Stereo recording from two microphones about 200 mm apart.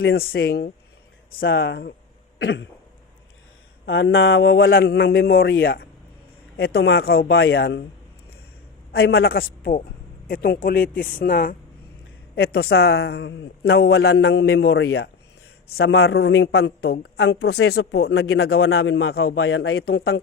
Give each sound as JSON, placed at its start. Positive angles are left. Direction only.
{"t": 0.0, "sound": "a man's voice", "side_deg": 50}
{"t": 1.5, "sound": "a man's voice", "side_deg": 65}
{"t": 3.8, "sound": "speech", "side_deg": 70}
{"t": 4.5, "sound": "a man's voice", "side_deg": 50}
{"t": 7.3, "sound": "speech", "side_deg": 75}
{"t": 8.9, "sound": "a man's voice", "side_deg": 50}
{"t": 18.7, "sound": "a man's voice", "side_deg": 90}
{"t": 19.0, "sound": "a man's voice", "side_deg": 55}
{"t": 19.4, "sound": "a man's voice", "side_deg": 85}